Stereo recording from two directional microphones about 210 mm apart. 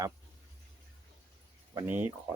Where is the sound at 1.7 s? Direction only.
15° right (ahead or behind).